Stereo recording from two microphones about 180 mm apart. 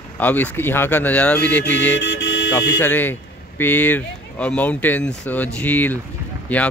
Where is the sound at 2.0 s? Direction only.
85° left.